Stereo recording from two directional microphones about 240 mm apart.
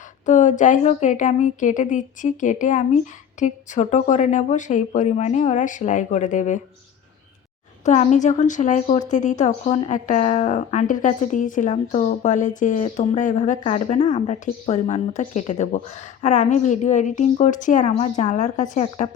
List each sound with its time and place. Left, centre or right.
0.3 s a woman's voice: left
7.9 s a woman's voice: left